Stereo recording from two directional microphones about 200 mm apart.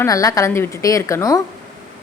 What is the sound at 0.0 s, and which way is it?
A woman's voice, 15° left (ahead or behind).